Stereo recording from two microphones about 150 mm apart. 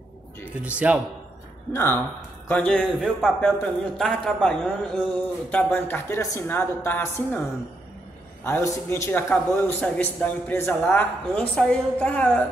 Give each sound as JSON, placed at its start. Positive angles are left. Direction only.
{"t": 0.6, "sound": "speech", "side_deg": -10}
{"t": 1.7, "sound": "a man's voice", "side_deg": 15}
{"t": 8.5, "sound": "a man's voice", "side_deg": 15}